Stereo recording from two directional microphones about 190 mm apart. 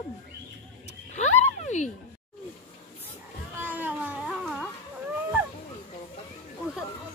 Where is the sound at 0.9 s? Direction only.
35° left (ahead or behind).